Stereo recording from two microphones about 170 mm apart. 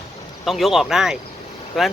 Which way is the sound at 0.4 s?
Centre (ahead or behind).